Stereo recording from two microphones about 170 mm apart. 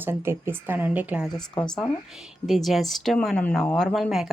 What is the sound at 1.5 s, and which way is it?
Speech, 5° left (ahead or behind).